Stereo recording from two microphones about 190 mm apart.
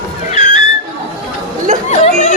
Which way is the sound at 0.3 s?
40° left (ahead or behind).